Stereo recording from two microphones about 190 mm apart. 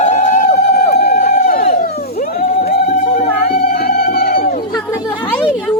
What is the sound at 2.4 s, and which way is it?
Music, 50° left (ahead or behind).